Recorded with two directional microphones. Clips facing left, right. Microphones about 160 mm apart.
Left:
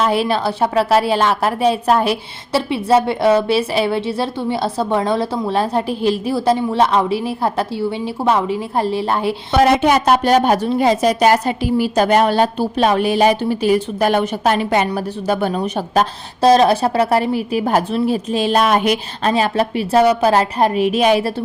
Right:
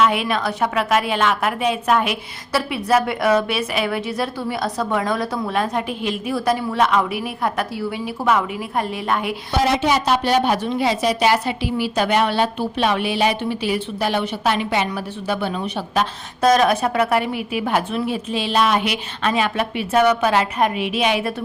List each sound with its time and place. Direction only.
0.0 s a woman's voice: 35° left (ahead or behind)
9.5 s a woman's voice: 55° left (ahead or behind)
16.4 s a woman's voice: 30° left (ahead or behind)